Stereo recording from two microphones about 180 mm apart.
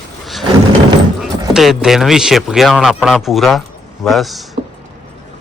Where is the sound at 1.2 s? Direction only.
Centre (ahead or behind).